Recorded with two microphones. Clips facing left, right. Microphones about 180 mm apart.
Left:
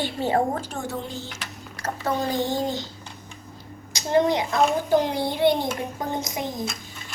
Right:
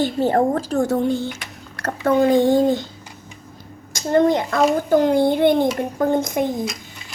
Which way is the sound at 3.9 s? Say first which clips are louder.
Right 4 dB; 50° right (ahead or behind).